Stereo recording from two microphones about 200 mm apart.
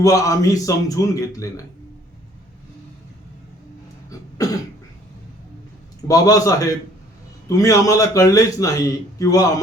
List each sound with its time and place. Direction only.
0.0 s a man's voice: 15° left (ahead or behind)
6.1 s a man's voice: 15° left (ahead or behind)